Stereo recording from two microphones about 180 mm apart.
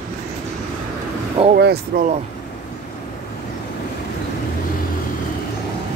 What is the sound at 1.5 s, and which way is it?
Speech, 65° right (ahead or behind).